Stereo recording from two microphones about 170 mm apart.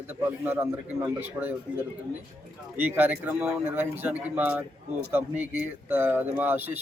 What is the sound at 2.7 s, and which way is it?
A man's voice, 10° right (ahead or behind).